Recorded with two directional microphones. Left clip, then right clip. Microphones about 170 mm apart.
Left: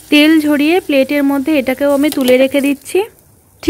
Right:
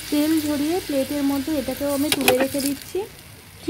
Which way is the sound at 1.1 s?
50° left (ahead or behind).